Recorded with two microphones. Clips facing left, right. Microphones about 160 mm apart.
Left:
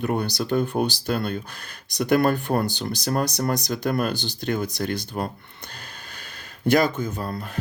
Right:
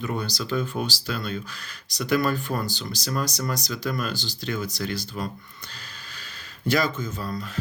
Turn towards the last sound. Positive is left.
turn(degrees=55)  # may be behind; listen again after turning